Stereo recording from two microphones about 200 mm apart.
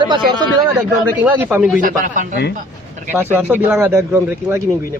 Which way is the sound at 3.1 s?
5° right (ahead or behind).